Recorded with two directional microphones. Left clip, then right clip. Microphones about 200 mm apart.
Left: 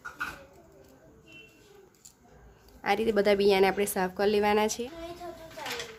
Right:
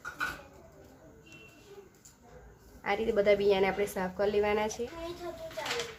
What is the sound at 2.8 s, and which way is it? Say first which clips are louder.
A woman's voice: left 2 dB; 50° left (ahead or behind).